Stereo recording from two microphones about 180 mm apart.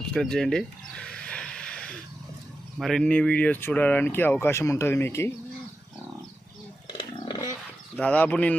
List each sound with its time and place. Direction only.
0.1 s a sound: 5° left (ahead or behind)
2.7 s speech: centre (ahead or behind)
6.8 s roaring cats: 25° left (ahead or behind)
7.9 s speech: 5° left (ahead or behind)